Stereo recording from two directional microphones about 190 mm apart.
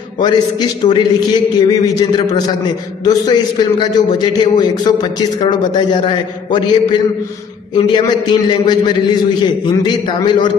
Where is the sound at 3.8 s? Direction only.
25° left (ahead or behind).